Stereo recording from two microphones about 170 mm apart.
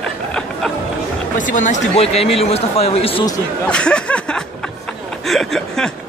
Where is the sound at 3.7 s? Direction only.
5° left (ahead or behind).